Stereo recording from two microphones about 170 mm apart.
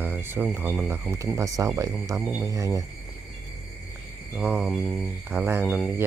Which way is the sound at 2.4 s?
20° right (ahead or behind).